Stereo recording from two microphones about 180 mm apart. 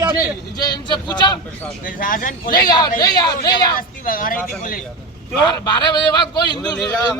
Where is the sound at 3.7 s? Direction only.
50° left (ahead or behind).